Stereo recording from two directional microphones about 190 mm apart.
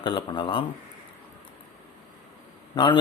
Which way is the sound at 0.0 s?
25° left (ahead or behind).